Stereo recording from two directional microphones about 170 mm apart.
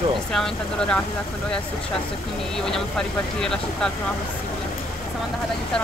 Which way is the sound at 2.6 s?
5° left (ahead or behind).